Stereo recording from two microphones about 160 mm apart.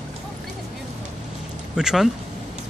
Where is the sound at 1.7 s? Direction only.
5° right (ahead or behind).